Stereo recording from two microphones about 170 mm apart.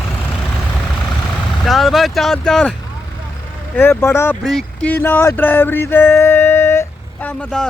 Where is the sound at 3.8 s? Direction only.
15° left (ahead or behind).